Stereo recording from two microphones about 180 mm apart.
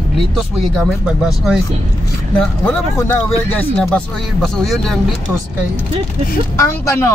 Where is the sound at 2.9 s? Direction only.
15° left (ahead or behind).